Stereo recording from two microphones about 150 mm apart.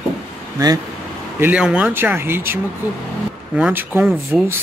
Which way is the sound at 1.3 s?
10° right (ahead or behind).